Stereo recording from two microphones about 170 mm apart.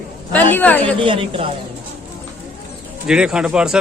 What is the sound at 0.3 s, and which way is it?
Speech, 10° left (ahead or behind).